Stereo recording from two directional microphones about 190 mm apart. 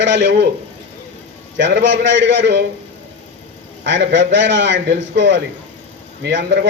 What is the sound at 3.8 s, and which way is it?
Speech, 70° right (ahead or behind).